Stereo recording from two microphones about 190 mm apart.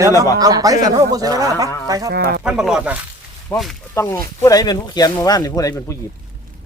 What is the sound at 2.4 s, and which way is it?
Speech, 5° right (ahead or behind).